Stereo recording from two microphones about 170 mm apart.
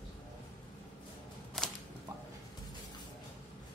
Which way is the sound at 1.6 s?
Centre (ahead or behind).